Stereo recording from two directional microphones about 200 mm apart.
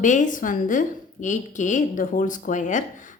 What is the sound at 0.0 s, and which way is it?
A woman's voice, 40° left (ahead or behind).